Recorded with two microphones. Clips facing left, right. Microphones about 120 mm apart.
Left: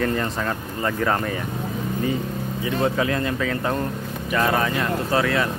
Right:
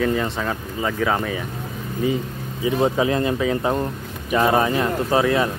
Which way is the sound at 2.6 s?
20° right (ahead or behind).